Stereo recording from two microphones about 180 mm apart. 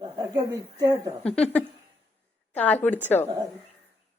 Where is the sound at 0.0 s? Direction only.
25° right (ahead or behind).